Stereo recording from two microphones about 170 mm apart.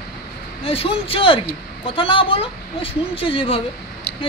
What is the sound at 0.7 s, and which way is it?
A man's voice, 35° left (ahead or behind).